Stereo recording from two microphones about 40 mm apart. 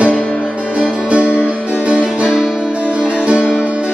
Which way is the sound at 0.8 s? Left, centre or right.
Right.